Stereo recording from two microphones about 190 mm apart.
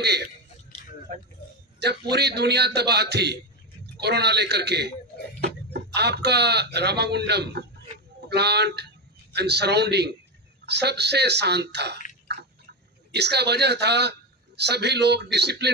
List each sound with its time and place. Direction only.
1.4 s a sound: 55° left (ahead or behind)
1.8 s a man's voice: 60° right (ahead or behind)
13.1 s a man's voice: 60° right (ahead or behind)